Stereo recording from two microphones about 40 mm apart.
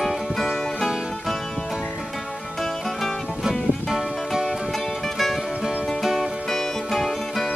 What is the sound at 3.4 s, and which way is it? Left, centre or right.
Music, centre.